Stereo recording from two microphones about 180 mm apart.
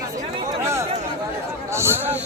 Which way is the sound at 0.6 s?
15° right (ahead or behind).